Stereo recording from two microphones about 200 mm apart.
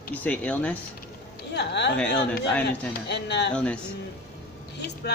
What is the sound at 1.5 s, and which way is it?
Speech, 60° left (ahead or behind).